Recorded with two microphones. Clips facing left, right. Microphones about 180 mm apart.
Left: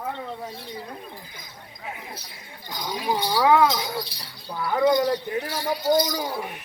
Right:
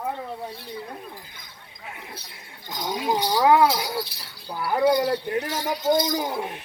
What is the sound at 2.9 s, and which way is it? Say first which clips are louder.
Speech: right 1 dB; 20° right (ahead or behind).